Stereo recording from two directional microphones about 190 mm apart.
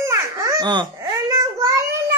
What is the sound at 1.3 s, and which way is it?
Child singing, 15° right (ahead or behind).